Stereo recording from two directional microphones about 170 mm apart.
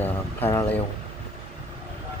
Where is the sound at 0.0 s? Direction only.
15° left (ahead or behind).